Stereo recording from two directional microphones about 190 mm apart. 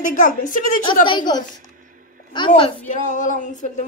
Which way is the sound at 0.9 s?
25° left (ahead or behind).